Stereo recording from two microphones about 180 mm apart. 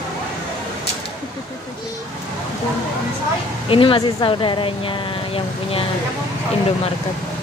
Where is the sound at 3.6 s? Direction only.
30° left (ahead or behind).